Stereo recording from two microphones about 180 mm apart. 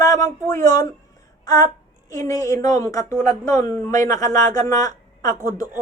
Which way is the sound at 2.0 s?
20° left (ahead or behind).